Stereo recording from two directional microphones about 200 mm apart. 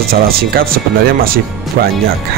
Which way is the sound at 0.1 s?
50° right (ahead or behind).